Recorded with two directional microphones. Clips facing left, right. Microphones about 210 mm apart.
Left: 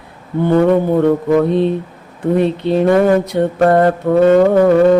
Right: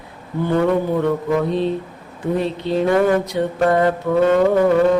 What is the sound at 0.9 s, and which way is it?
Mantra, 50° left (ahead or behind).